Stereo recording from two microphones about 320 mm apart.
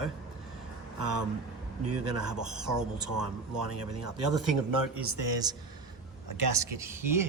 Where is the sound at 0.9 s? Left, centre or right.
Right.